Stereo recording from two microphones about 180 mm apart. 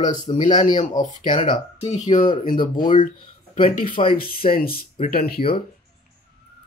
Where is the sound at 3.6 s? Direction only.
50° left (ahead or behind).